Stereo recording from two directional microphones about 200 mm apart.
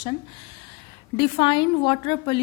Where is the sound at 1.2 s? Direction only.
25° left (ahead or behind).